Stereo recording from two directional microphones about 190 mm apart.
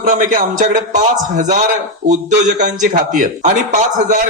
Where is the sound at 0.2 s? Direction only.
45° right (ahead or behind).